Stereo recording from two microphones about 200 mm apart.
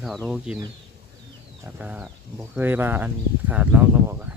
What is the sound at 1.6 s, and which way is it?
Speech, 5° right (ahead or behind).